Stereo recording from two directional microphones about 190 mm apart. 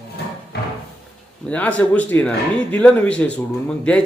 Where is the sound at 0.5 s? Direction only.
60° left (ahead or behind).